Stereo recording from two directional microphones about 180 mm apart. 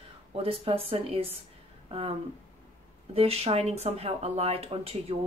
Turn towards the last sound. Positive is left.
turn(degrees=-35)  # may be behind; listen again after turning